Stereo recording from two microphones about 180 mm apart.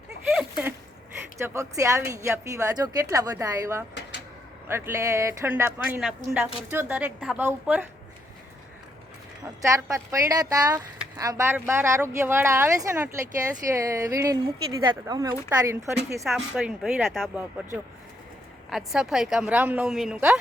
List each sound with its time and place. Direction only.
1.4 s speech: 15° right (ahead or behind)
9.6 s a woman's voice: 15° right (ahead or behind)
16.2 s a woman's voice: centre (ahead or behind)
18.7 s a woman's voice: centre (ahead or behind)